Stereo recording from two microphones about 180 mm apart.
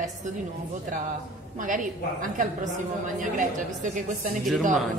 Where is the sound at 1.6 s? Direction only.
45° right (ahead or behind).